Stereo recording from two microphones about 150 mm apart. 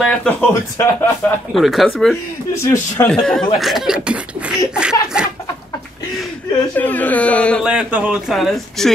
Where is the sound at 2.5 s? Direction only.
20° left (ahead or behind).